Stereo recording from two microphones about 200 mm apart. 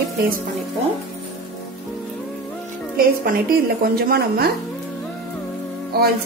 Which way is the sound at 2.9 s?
45° right (ahead or behind).